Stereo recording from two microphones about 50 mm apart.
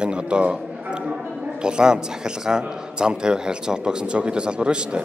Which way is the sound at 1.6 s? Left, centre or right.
Centre.